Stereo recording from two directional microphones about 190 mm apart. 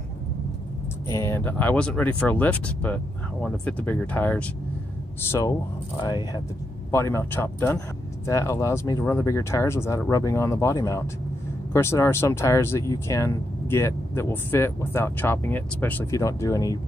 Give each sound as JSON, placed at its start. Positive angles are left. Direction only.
{"t": 1.0, "sound": "speech", "side_deg": 15}